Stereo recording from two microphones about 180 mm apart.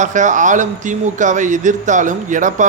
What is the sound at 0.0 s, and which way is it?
A man's voice, 45° right (ahead or behind).